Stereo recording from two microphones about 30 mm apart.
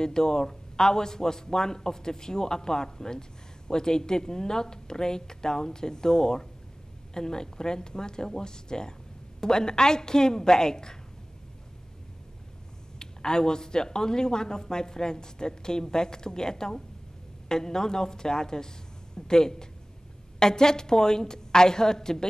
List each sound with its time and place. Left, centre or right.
0.0 s a man's voice: left
13.0 s a man's voice: left